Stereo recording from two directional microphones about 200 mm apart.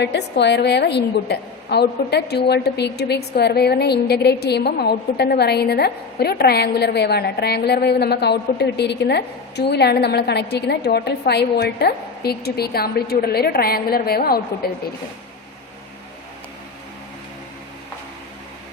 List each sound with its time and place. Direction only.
0.0 s a woman's voice: 60° left (ahead or behind)